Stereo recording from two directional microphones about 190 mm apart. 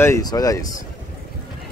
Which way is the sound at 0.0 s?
20° left (ahead or behind).